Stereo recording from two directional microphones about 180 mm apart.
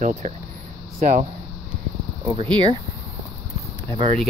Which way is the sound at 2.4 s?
25° right (ahead or behind).